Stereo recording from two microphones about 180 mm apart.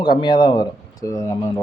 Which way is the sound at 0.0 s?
25° left (ahead or behind).